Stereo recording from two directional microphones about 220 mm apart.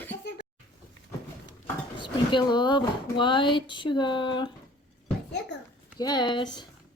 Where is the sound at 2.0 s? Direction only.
20° left (ahead or behind).